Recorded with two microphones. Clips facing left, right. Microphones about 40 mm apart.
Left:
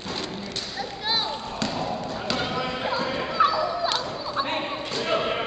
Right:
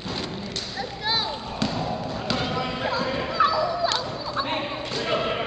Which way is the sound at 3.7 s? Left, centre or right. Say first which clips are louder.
Right 1 dB; centre.